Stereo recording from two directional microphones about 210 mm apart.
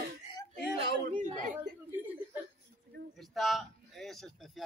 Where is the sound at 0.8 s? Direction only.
35° right (ahead or behind).